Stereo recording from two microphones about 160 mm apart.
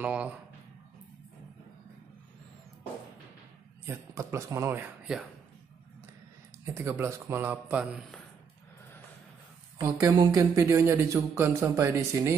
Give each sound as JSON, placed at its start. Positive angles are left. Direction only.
{"t": 0.0, "sound": "speech", "side_deg": -10}
{"t": 3.8, "sound": "speech", "side_deg": -15}
{"t": 6.6, "sound": "speech", "side_deg": -15}
{"t": 9.8, "sound": "speech", "side_deg": -20}